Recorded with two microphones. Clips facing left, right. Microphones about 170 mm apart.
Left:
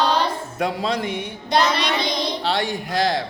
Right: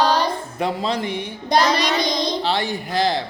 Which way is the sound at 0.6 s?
Centre (ahead or behind).